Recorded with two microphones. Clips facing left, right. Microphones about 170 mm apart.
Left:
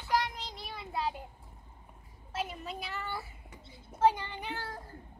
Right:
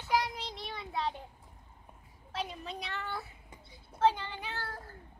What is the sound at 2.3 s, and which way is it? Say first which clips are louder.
A woman's voice: left 1 dB; 5° left (ahead or behind).